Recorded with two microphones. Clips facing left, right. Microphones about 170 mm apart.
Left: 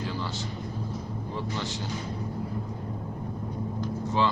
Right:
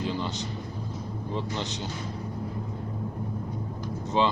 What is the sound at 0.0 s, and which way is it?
Thunder, 20° right (ahead or behind).